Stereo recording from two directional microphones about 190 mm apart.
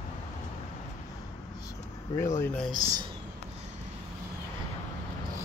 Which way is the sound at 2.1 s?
15° left (ahead or behind).